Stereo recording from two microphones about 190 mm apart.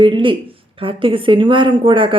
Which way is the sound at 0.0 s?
25° right (ahead or behind).